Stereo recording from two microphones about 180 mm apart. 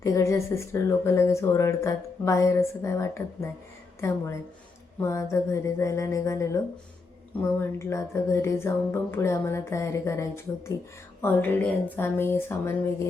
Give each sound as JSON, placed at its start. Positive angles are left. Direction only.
{"t": 0.0, "sound": "speech", "side_deg": 15}